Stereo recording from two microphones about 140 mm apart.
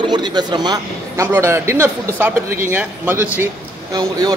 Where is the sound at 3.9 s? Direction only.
25° right (ahead or behind).